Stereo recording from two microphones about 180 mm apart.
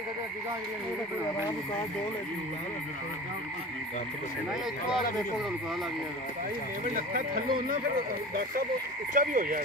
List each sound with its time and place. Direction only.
7.0 s speech: 50° right (ahead or behind)
9.1 s speech: 50° right (ahead or behind)